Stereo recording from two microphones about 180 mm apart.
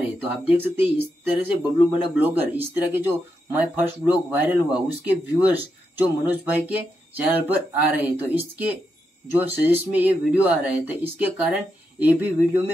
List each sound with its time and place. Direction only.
0.5 s speech: 10° right (ahead or behind)